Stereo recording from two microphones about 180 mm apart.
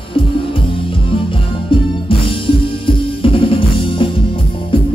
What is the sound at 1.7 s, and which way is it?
Music, 30° left (ahead or behind).